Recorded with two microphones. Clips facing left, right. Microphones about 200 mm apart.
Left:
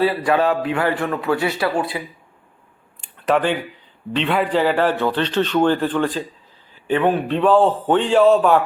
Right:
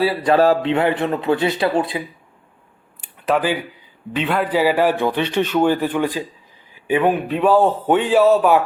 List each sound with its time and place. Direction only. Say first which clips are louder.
0.0 s a man's voice: even; 10° right (ahead or behind)
0.3 s speech: right 7 dB; 35° right (ahead or behind)
0.6 s speech: right 2 dB; 25° right (ahead or behind)
3.0 s a sound: left 1 dB; 5° right (ahead or behind)
4.1 s a man's voice: even; 5° right (ahead or behind)